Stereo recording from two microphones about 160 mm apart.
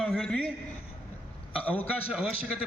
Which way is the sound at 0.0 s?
5° left (ahead or behind).